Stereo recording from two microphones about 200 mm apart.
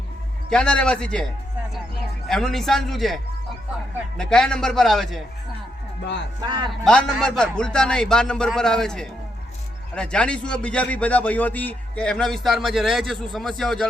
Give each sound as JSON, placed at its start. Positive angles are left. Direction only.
{"t": 0.5, "sound": "a man's voice", "side_deg": 5}
{"t": 4.2, "sound": "a man's voice", "side_deg": 5}
{"t": 6.4, "sound": "a man's voice", "side_deg": -20}
{"t": 6.7, "sound": "a man's voice", "side_deg": 5}